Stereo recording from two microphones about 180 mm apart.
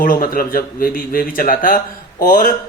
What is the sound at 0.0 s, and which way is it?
Speech, 50° left (ahead or behind).